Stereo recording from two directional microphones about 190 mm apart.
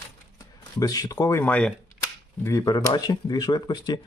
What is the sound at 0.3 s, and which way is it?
Speech, 20° left (ahead or behind).